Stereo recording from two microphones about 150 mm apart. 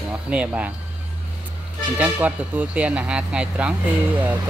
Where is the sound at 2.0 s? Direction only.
10° right (ahead or behind).